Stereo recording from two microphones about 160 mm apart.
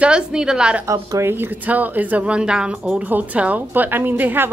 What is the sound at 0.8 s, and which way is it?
A woman's voice, 20° right (ahead or behind).